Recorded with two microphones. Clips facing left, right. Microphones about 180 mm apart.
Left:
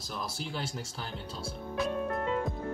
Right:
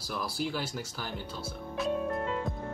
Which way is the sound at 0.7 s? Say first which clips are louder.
Right 2 dB; 30° left (ahead or behind).